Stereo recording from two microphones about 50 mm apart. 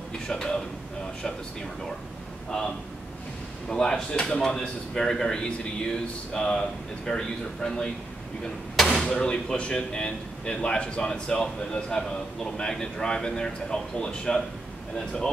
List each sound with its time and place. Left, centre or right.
0.3 s speech: centre
3.6 s speech: centre
9.0 s speech: centre